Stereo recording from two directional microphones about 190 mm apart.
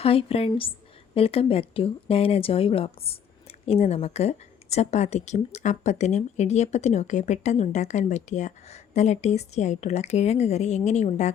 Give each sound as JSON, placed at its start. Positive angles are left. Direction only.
{"t": 0.0, "sound": "a woman's voice", "side_deg": 30}